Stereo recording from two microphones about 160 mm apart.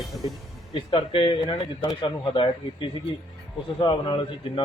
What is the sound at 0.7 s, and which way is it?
A man's voice, 30° left (ahead or behind).